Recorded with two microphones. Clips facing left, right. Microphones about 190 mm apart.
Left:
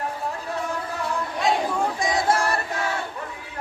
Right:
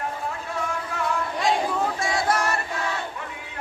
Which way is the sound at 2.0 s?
20° left (ahead or behind).